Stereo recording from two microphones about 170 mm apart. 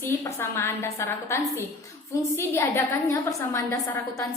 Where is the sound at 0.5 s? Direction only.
15° left (ahead or behind).